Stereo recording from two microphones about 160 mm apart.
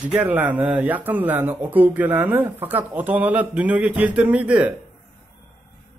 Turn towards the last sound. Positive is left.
turn(degrees=-10)  # may be behind; listen again after turning